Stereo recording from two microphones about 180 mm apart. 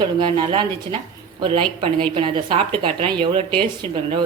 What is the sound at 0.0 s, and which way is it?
A woman's voice, 25° right (ahead or behind).